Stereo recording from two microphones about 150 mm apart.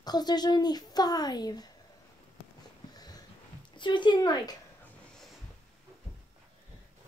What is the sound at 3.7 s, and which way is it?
Speech, 30° left (ahead or behind).